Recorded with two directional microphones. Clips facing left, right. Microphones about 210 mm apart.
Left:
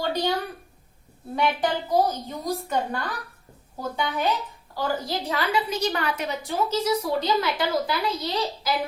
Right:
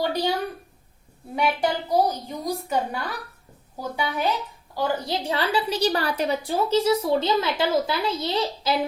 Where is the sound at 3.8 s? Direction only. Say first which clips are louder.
Even; 10° right (ahead or behind).